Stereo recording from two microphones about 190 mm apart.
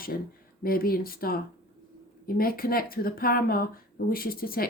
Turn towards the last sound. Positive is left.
turn(degrees=50)  # may be behind; listen again after turning